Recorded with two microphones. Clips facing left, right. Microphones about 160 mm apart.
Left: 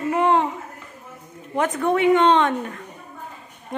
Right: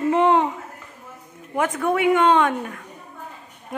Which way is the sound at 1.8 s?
10° right (ahead or behind).